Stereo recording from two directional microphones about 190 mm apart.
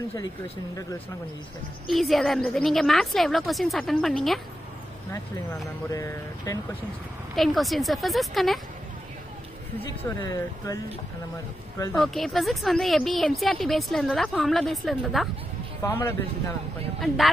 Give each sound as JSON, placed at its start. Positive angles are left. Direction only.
{"t": 1.9, "sound": "speech", "side_deg": 0}
{"t": 5.1, "sound": "speech", "side_deg": 15}
{"t": 7.3, "sound": "speech", "side_deg": 0}
{"t": 10.0, "sound": "speech", "side_deg": 15}
{"t": 12.0, "sound": "speech", "side_deg": 0}
{"t": 15.8, "sound": "speech", "side_deg": 15}